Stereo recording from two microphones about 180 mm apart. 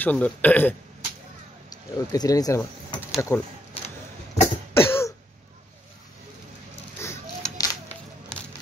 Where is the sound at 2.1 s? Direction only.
20° left (ahead or behind).